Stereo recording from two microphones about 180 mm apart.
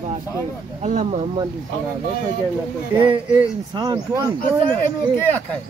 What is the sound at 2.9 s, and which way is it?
Speech, 30° right (ahead or behind).